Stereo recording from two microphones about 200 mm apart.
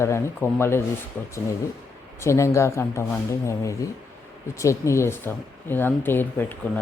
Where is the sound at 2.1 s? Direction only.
15° left (ahead or behind).